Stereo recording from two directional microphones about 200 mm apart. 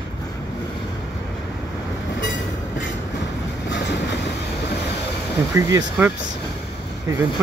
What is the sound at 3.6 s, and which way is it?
Train, 60° left (ahead or behind).